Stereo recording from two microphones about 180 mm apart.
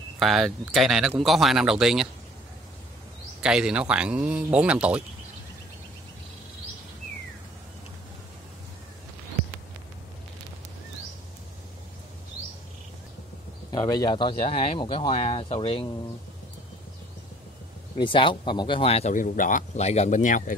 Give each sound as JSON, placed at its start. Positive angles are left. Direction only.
{"t": 0.2, "sound": "speech", "side_deg": 0}
{"t": 3.4, "sound": "a man's voice", "side_deg": -5}
{"t": 13.7, "sound": "speech", "side_deg": 20}
{"t": 17.9, "sound": "speech", "side_deg": 30}